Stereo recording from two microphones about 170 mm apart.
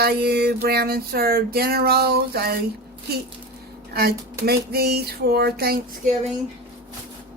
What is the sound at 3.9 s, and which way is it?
Speech, 65° right (ahead or behind).